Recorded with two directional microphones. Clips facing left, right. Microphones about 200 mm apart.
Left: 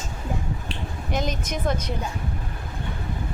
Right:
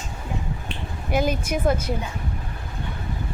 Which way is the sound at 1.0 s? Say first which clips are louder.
Right 5 dB; 10° right (ahead or behind).